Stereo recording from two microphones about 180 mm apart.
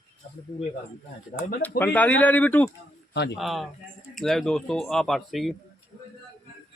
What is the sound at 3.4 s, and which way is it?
Speech, centre (ahead or behind).